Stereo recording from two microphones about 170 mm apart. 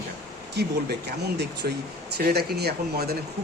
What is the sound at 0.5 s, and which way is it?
Speech, 75° right (ahead or behind).